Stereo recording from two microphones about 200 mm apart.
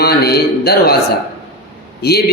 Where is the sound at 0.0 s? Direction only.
50° left (ahead or behind).